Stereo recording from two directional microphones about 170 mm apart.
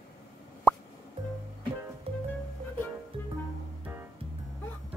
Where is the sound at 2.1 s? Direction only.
35° right (ahead or behind).